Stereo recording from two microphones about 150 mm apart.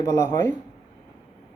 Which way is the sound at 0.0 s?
20° left (ahead or behind).